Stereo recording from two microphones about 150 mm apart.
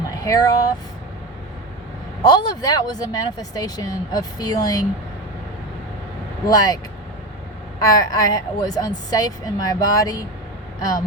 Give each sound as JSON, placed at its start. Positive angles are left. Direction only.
{"t": 0.3, "sound": "speech", "side_deg": 25}
{"t": 2.2, "sound": "speech", "side_deg": 30}
{"t": 6.4, "sound": "speech", "side_deg": 25}
{"t": 7.8, "sound": "speech", "side_deg": 25}